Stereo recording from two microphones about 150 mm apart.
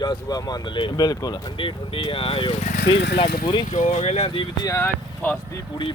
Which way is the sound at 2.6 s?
65° left (ahead or behind).